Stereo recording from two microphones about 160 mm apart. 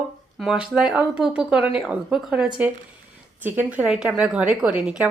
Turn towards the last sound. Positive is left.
turn(degrees=-5)  # may be behind; listen again after turning